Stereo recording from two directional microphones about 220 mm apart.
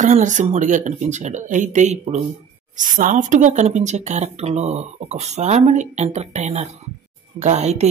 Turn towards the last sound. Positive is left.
turn(degrees=-30)  # may be behind; listen again after turning